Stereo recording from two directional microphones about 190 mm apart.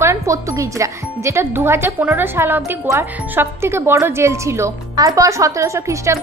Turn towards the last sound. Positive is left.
turn(degrees=-15)  # may be behind; listen again after turning